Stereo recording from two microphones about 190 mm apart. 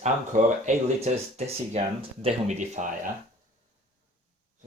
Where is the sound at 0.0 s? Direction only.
40° right (ahead or behind).